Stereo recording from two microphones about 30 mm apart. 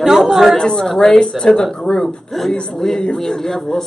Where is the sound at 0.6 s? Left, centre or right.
Left.